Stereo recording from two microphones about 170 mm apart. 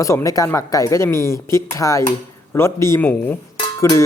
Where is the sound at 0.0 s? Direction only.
20° left (ahead or behind).